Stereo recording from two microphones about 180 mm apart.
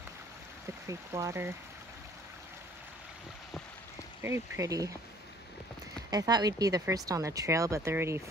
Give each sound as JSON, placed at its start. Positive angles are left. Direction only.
{"t": 0.8, "sound": "speech", "side_deg": -15}
{"t": 4.2, "sound": "speech", "side_deg": -15}
{"t": 6.0, "sound": "speech", "side_deg": -20}